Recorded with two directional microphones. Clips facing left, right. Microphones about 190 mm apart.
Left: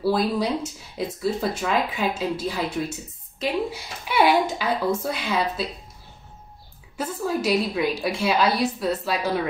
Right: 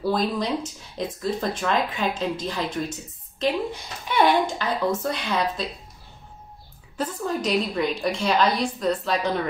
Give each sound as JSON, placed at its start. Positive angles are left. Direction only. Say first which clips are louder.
{"t": 0.0, "sound": "speech", "louder": "left 2 dB", "side_deg": 5}
{"t": 7.0, "sound": "speech", "louder": "left 1 dB", "side_deg": 5}